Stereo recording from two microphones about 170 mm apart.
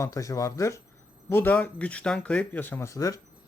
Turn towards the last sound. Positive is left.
turn(degrees=20)  # may be behind; listen again after turning